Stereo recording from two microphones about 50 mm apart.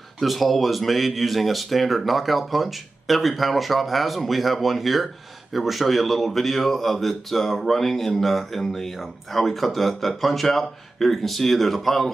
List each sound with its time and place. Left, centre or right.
0.2 s speech: centre